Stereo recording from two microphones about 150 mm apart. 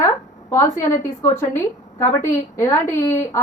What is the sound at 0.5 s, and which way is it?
A woman's voice, 20° left (ahead or behind).